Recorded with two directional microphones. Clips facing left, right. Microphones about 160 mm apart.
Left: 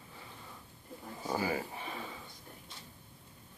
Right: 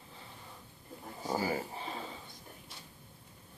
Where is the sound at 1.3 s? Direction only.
30° right (ahead or behind).